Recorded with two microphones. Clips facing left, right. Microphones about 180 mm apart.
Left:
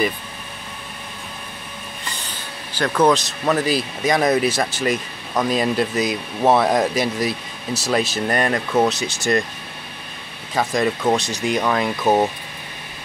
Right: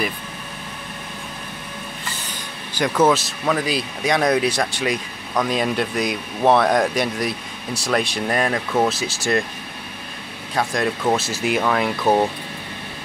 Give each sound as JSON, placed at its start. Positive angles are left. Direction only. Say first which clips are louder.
{"t": 2.8, "sound": "speech", "louder": "even", "side_deg": -5}
{"t": 10.5, "sound": "speech", "louder": "left 2 dB", "side_deg": 0}